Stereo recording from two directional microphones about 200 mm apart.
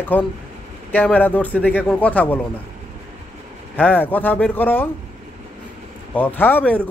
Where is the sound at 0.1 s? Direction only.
10° left (ahead or behind).